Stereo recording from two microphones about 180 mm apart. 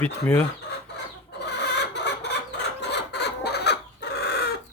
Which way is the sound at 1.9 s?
70° left (ahead or behind).